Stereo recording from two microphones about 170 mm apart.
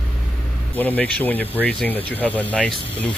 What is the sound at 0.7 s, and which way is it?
Speech, 10° left (ahead or behind).